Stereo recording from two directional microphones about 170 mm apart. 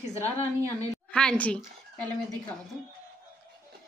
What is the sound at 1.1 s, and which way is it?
Speech, 5° left (ahead or behind).